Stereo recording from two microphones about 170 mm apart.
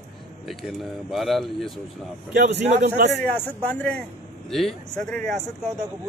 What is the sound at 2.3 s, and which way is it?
Speech, 80° right.